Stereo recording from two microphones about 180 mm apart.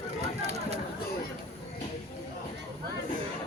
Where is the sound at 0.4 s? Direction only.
35° right (ahead or behind).